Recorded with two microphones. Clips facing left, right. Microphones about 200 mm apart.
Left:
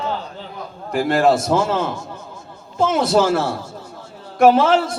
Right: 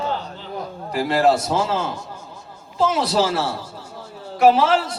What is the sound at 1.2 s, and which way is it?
A man's voice, 45° left (ahead or behind).